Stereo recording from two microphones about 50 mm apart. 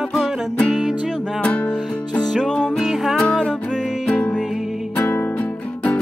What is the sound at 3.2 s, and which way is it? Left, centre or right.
Music, centre.